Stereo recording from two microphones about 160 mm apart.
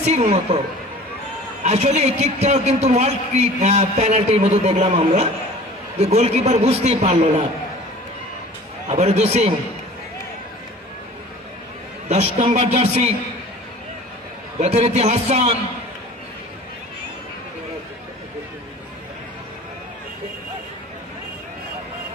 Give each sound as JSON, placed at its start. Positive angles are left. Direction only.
{"t": 0.0, "sound": "speech", "side_deg": -40}
{"t": 1.6, "sound": "a man's voice", "side_deg": -45}
{"t": 8.8, "sound": "speech", "side_deg": -40}
{"t": 12.1, "sound": "speech", "side_deg": -40}
{"t": 14.6, "sound": "speech", "side_deg": -40}